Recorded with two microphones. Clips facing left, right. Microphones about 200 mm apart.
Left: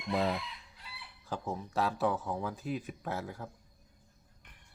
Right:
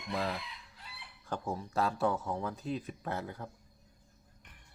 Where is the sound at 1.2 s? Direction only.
Centre (ahead or behind).